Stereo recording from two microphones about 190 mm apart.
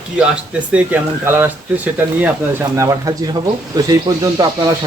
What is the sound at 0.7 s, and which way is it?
Speech, 10° right (ahead or behind).